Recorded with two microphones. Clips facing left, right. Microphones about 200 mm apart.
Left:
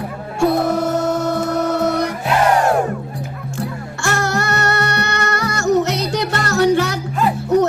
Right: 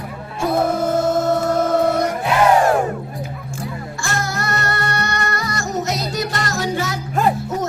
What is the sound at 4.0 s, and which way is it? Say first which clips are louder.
Music: left 6 dB; 70° left (ahead or behind).